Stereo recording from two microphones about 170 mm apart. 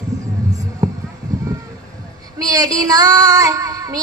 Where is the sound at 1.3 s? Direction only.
20° right (ahead or behind).